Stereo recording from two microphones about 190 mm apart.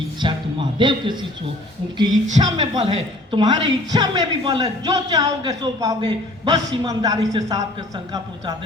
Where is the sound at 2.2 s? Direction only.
40° right (ahead or behind); by 8.6 s 20° right (ahead or behind).